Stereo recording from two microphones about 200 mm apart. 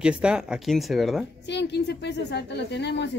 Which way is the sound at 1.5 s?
60° left (ahead or behind).